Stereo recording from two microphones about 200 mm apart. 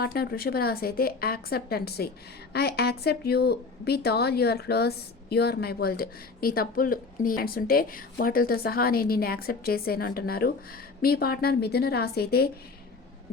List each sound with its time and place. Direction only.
0.0 s a woman's voice: 50° left (ahead or behind)